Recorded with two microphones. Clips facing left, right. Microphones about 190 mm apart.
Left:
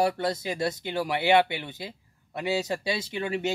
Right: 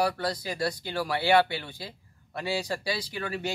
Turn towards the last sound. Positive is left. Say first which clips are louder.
# left 4 dB
turn(degrees=20)  # may be behind; listen again after turning